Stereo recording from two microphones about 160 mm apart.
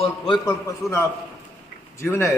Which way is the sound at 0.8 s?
Centre (ahead or behind).